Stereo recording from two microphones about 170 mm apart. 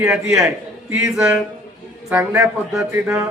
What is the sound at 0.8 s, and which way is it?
A man's voice, 15° right (ahead or behind).